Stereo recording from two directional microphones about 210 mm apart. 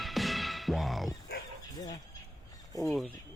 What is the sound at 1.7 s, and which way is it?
Chicken, 20° left (ahead or behind).